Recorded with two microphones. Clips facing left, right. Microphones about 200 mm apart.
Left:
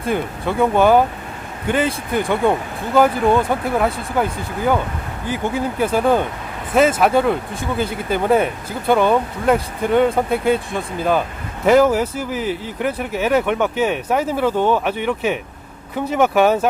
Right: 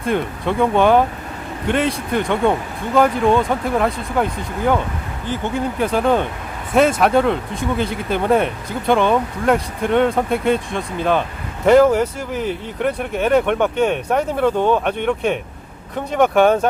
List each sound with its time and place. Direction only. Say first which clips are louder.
0.0 s speech: right 1 dB; 5° left (ahead or behind)